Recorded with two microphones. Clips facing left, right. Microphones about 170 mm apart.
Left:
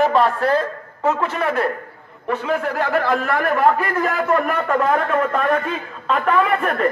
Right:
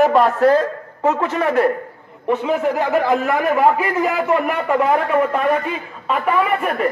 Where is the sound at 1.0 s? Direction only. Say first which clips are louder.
Right 2 dB; 20° right (ahead or behind).